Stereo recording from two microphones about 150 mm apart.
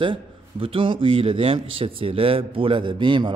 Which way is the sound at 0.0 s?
35° right (ahead or behind).